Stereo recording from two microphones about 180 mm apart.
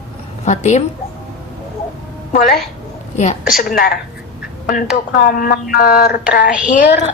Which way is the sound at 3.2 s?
40° left (ahead or behind).